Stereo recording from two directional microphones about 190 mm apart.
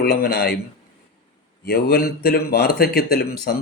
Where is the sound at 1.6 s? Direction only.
55° left (ahead or behind).